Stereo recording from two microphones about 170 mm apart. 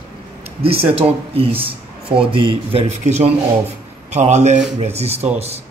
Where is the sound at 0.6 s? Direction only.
35° right (ahead or behind).